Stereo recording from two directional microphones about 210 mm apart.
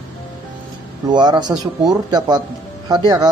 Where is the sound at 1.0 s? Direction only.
20° right (ahead or behind).